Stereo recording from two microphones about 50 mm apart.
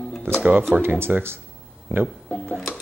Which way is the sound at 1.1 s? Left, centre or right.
Centre.